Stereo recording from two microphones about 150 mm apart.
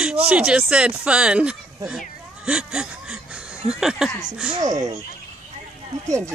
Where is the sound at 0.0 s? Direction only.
10° right (ahead or behind).